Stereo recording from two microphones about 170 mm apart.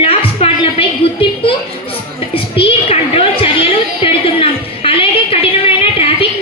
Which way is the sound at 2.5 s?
35° left (ahead or behind).